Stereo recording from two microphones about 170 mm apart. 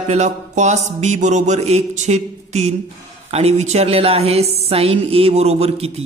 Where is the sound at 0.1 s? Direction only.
40° right (ahead or behind).